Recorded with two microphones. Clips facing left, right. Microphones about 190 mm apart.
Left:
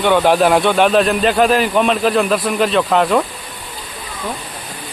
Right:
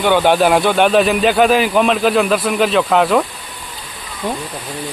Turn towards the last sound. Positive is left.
turn(degrees=0)  # may be behind; listen again after turning